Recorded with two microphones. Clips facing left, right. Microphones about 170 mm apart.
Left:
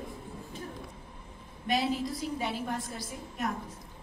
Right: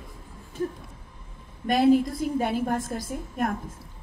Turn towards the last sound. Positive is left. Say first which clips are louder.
# right 7 dB
turn(degrees=-50)  # may be behind; listen again after turning